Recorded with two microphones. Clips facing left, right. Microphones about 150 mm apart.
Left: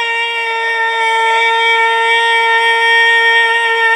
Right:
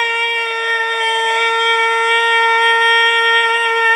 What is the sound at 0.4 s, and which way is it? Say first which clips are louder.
Wind instrument: left 3 dB; 35° left (ahead or behind).